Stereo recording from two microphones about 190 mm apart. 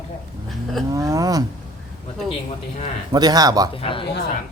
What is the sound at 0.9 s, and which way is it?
Speech, 15° right (ahead or behind).